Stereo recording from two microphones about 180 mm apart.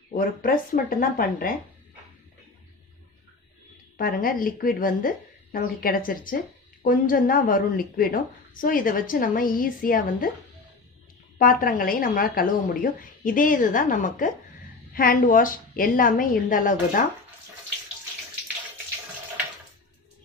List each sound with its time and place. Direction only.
0.1 s a woman's voice: 55° left (ahead or behind)
3.9 s a woman's voice: 50° left (ahead or behind)
11.3 s a woman's voice: 50° left (ahead or behind)